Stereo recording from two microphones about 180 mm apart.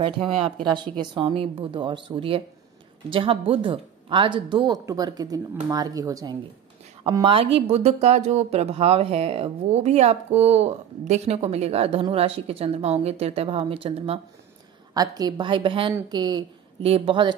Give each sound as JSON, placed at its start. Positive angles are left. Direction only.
{"t": 0.0, "sound": "speech", "side_deg": -30}
{"t": 15.0, "sound": "speech", "side_deg": -20}